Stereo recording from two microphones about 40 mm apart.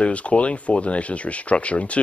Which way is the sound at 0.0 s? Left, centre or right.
Left.